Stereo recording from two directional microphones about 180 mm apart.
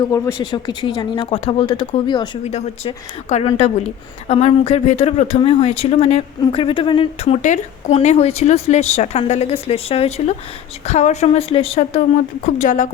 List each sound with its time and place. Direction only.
0.0 s speech: 20° left (ahead or behind)
2.5 s a woman's voice: 35° left (ahead or behind)
12.5 s speech: 45° left (ahead or behind)